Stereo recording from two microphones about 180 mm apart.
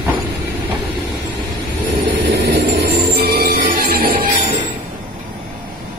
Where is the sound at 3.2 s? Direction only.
60° right (ahead or behind).